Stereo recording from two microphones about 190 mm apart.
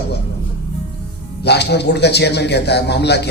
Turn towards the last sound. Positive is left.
turn(degrees=60)  # may be behind; listen again after turning